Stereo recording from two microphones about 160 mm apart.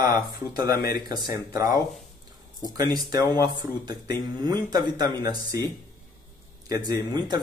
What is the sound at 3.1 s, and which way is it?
Speech, 25° right (ahead or behind).